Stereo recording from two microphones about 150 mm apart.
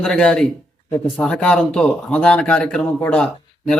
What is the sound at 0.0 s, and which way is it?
Speech, 5° left (ahead or behind).